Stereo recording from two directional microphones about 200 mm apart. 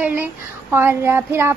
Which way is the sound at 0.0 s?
10° right (ahead or behind).